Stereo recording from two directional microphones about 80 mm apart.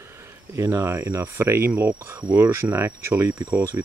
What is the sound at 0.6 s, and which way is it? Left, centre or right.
Speech, right.